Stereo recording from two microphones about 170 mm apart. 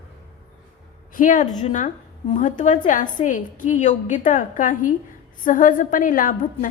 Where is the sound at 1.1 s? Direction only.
50° left (ahead or behind).